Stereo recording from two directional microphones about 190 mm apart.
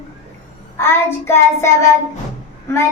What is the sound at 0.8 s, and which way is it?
Child singing, 10° left (ahead or behind).